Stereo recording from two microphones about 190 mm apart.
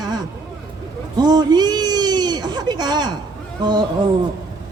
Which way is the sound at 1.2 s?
20° right (ahead or behind).